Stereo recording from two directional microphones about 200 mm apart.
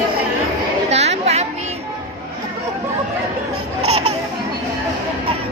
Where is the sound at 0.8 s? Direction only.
35° right (ahead or behind).